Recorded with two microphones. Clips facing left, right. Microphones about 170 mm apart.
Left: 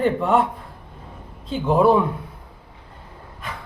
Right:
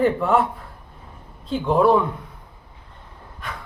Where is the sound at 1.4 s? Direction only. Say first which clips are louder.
Left 1 dB; centre (ahead or behind).